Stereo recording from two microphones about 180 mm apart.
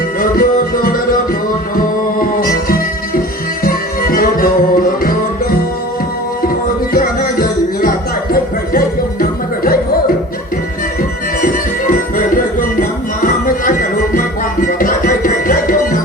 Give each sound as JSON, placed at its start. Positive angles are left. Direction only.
{"t": 0.2, "sound": "music", "side_deg": 50}
{"t": 6.9, "sound": "music", "side_deg": 55}
{"t": 11.4, "sound": "music", "side_deg": 50}